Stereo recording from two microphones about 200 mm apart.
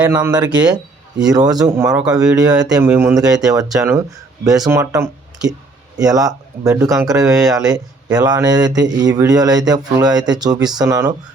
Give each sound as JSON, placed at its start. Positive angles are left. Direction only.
{"t": 0.3, "sound": "speech", "side_deg": -20}